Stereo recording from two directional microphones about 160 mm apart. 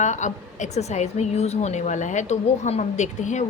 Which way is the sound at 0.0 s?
50° left (ahead or behind).